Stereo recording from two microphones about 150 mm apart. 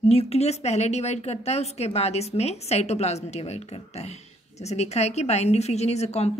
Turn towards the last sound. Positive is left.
turn(degrees=45)  # may be behind; listen again after turning